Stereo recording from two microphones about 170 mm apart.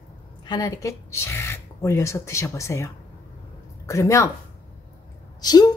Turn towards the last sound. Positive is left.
turn(degrees=25)  # may be behind; listen again after turning